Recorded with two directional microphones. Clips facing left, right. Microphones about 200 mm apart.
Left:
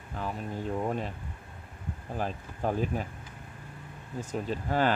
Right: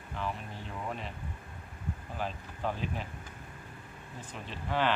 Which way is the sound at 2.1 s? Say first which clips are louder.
Left 5 dB; 45° left (ahead or behind).